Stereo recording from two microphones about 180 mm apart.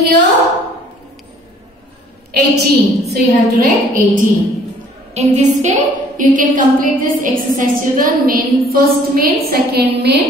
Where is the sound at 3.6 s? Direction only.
45° right (ahead or behind).